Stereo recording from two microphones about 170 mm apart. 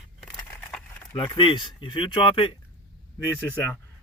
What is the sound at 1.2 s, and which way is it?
Speech, 30° left (ahead or behind).